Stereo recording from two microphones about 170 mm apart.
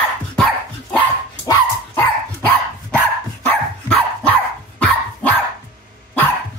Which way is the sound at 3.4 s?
10° left (ahead or behind).